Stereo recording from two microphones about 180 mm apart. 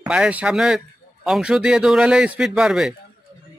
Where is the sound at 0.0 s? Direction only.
5° right (ahead or behind).